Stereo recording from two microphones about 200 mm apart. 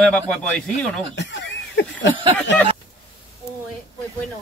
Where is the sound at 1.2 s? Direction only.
60° left (ahead or behind).